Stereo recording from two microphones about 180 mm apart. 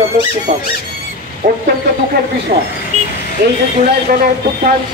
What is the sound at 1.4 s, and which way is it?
Speech, 45° right (ahead or behind).